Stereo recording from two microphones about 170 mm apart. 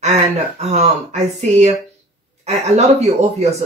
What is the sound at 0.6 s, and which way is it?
Speech, 40° right (ahead or behind).